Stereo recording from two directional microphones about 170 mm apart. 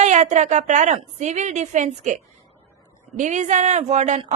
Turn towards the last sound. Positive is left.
turn(degrees=-40)  # may be behind; listen again after turning